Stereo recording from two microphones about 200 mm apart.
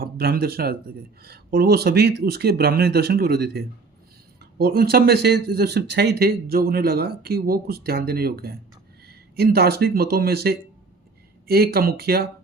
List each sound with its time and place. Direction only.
0.0 s speech: 50° right (ahead or behind)